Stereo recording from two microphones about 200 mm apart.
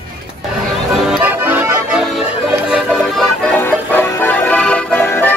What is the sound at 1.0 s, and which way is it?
Accordion, 5° right (ahead or behind).